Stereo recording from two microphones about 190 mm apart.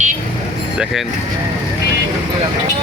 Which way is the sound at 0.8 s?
Centre (ahead or behind).